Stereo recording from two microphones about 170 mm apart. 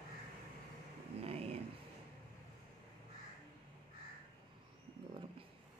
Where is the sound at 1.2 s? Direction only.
35° right (ahead or behind).